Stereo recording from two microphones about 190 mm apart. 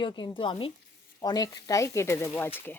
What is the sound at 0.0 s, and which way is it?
Speech, 25° left (ahead or behind).